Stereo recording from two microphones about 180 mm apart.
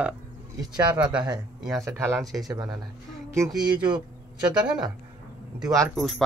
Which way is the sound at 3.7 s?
25° right (ahead or behind).